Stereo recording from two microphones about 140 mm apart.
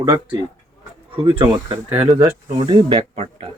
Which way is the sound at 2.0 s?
25° right (ahead or behind).